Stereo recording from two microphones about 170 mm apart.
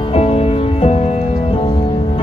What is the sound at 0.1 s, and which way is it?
Music, 35° left (ahead or behind).